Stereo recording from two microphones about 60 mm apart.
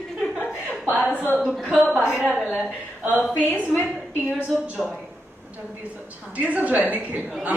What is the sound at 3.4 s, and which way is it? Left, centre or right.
Speech, right.